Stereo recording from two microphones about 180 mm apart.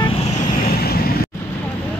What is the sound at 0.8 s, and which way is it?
Vehicle, 60° left (ahead or behind).